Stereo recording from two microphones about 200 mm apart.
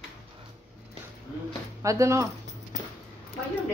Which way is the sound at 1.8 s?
15° right (ahead or behind).